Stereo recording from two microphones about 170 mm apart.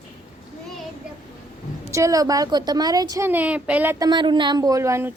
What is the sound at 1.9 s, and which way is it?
A woman's voice, 20° right (ahead or behind).